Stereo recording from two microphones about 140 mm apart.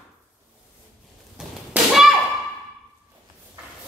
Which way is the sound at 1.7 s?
10° right (ahead or behind).